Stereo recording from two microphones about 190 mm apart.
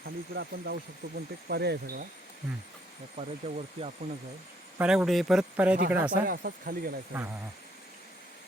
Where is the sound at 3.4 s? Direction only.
30° right (ahead or behind).